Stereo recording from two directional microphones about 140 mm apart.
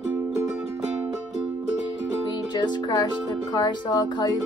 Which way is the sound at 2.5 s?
30° left (ahead or behind).